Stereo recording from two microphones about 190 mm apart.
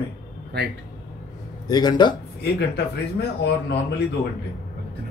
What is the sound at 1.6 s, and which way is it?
Speech, 20° left (ahead or behind).